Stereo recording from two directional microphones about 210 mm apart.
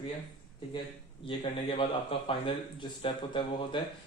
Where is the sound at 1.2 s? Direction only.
25° left (ahead or behind).